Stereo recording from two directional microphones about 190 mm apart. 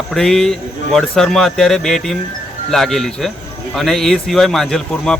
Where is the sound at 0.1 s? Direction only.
Centre (ahead or behind).